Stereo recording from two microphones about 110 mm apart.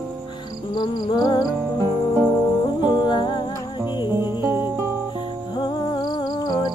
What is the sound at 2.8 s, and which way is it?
Music, 45° left (ahead or behind).